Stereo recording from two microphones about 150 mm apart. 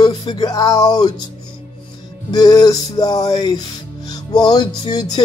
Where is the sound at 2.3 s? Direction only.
25° left (ahead or behind).